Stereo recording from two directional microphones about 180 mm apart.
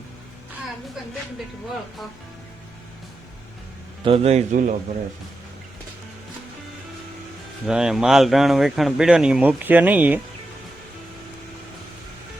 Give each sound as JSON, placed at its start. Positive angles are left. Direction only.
{"t": 4.0, "sound": "a man's voice", "side_deg": -35}
{"t": 7.7, "sound": "speech", "side_deg": -5}